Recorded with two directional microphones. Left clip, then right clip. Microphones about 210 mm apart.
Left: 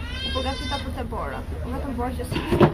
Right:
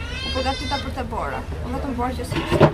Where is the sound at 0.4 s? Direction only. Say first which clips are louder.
Right 6 dB; 5° right (ahead or behind).